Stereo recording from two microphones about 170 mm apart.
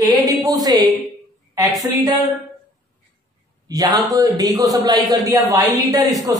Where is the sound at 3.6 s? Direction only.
20° right (ahead or behind).